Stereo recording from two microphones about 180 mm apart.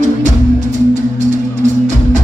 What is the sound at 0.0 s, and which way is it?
Music, 45° right (ahead or behind).